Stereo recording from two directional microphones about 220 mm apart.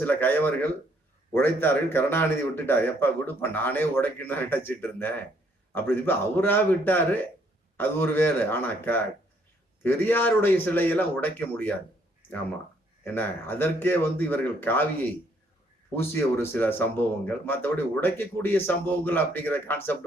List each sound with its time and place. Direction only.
0.0 s speech: 10° left (ahead or behind)
13.1 s speech: 10° left (ahead or behind)